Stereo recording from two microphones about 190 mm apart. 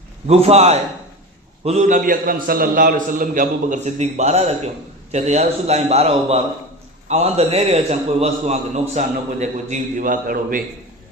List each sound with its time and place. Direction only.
0.3 s a man's voice: 35° right (ahead or behind)